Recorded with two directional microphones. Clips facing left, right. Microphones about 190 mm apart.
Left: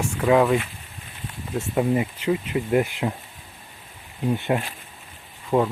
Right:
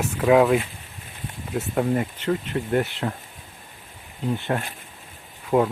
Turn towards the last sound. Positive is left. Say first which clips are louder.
# right 1 dB
turn(degrees=0)  # may be behind; listen again after turning